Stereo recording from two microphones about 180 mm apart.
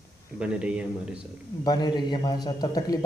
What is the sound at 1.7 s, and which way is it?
Speech, 25° left (ahead or behind).